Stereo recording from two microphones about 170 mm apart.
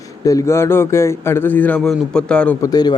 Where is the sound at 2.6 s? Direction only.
20° left (ahead or behind).